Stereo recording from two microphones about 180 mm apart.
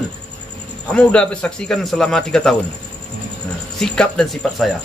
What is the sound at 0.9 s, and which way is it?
A man's voice, 5° left (ahead or behind).